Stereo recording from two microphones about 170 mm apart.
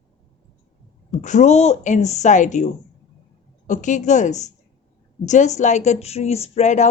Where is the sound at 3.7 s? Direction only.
45° left (ahead or behind).